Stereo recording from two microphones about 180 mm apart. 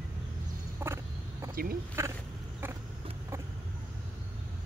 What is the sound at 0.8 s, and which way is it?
Vehicle, 15° right (ahead or behind).